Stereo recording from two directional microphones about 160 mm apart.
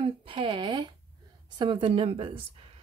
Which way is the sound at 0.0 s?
35° right (ahead or behind).